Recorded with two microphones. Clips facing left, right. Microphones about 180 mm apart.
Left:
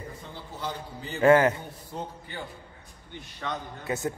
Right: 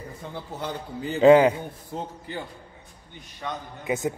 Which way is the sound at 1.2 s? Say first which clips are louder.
Right 4 dB; 15° right (ahead or behind).